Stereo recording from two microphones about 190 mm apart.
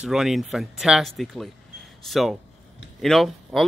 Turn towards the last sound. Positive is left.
turn(degrees=0)  # may be behind; listen again after turning